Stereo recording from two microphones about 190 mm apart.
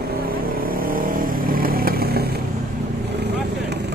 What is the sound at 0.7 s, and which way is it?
Vehicle, 50° right (ahead or behind).